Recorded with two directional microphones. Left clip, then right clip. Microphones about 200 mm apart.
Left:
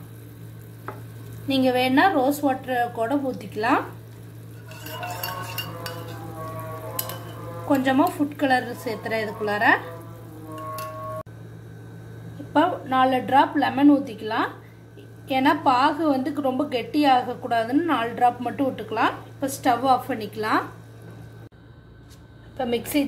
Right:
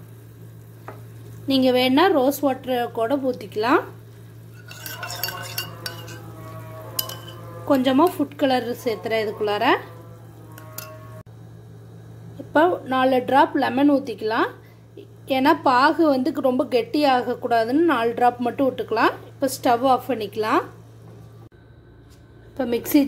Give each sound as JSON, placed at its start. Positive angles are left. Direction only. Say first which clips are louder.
{"t": 1.5, "sound": "a woman's voice", "louder": "right 2 dB", "side_deg": -45}
{"t": 7.7, "sound": "a woman's voice", "louder": "right 3 dB", "side_deg": -45}
{"t": 12.5, "sound": "a woman's voice", "louder": "right 2 dB", "side_deg": -40}
{"t": 22.6, "sound": "a woman's voice", "louder": "right 4 dB", "side_deg": -40}